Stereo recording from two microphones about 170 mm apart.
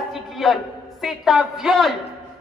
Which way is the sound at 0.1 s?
Centre (ahead or behind).